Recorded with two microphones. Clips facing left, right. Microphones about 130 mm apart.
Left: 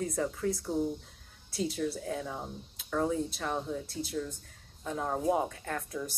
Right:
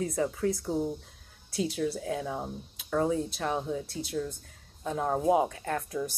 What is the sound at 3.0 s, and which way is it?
Speech, 5° right (ahead or behind).